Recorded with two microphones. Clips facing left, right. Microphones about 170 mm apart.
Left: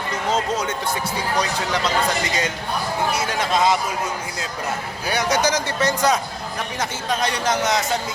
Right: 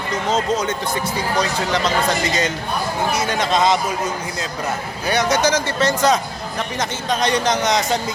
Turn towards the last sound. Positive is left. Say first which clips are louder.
# right 2 dB
turn(degrees=5)  # may be behind; listen again after turning